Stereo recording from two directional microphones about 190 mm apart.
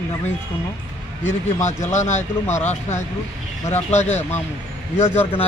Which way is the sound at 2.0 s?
10° left (ahead or behind).